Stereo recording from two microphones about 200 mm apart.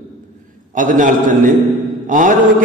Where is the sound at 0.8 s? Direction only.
40° right (ahead or behind).